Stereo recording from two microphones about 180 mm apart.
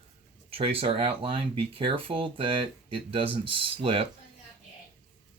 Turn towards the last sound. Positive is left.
turn(degrees=-30)  # may be behind; listen again after turning